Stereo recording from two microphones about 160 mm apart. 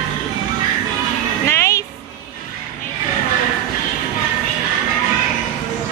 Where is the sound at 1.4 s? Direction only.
20° left (ahead or behind).